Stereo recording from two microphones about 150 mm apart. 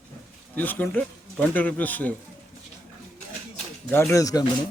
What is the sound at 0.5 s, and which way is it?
Speech, 10° left (ahead or behind).